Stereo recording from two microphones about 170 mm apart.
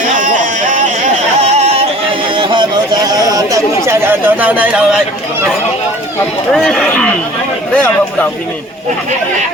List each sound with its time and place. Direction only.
1.4 s a sound: 40° right (ahead or behind)
2.3 s chatter: 30° right (ahead or behind); by 4.9 s 5° right (ahead or behind)
6.5 s speech: 5° left (ahead or behind)